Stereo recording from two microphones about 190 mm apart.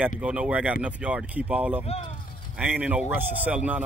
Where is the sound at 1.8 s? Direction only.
30° left (ahead or behind).